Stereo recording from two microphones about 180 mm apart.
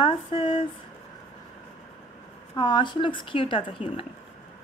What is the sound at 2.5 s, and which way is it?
Speech, 25° left (ahead or behind).